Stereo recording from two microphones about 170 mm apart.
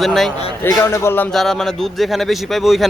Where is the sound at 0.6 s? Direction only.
15° left (ahead or behind).